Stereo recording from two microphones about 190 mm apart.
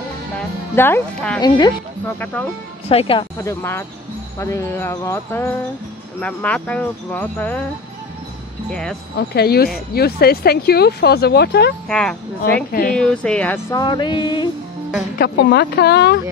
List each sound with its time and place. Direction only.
0.7 s speech: 10° left (ahead or behind)
1.4 s speech: 20° left (ahead or behind)
2.1 s speech: 10° left (ahead or behind)
2.9 s speech: 30° left (ahead or behind)
3.3 s speech: 15° left (ahead or behind)
8.6 s speech: 5° left (ahead or behind)
9.1 s speech: 55° left (ahead or behind)
11.9 s speech: 5° left (ahead or behind)
13.7 s speech: 25° left (ahead or behind)
15.1 s speech: 60° left (ahead or behind)